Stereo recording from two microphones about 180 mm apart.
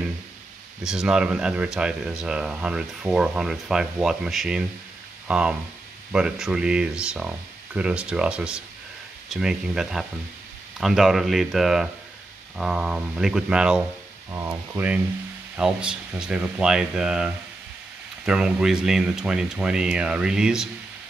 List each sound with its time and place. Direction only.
0.8 s speech: 5° right (ahead or behind)
14.3 s speech: 15° right (ahead or behind)